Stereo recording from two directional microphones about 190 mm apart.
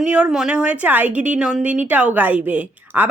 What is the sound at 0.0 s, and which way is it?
A woman's voice, 5° right (ahead or behind).